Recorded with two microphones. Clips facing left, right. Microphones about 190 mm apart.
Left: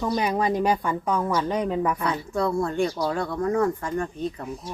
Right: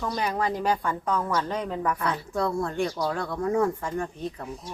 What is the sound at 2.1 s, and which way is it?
Speech, centre (ahead or behind).